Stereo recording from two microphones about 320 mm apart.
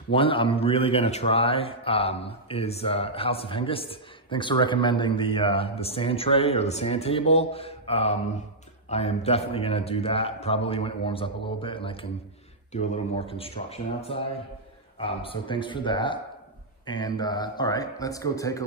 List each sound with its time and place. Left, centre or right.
0.1 s speech: centre